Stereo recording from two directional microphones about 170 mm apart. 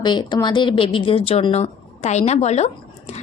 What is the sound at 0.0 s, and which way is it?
A woman's voice, 25° left (ahead or behind).